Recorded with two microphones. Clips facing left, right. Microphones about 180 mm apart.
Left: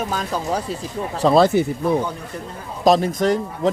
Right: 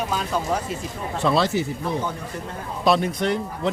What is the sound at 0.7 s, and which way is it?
Speech, 35° left (ahead or behind).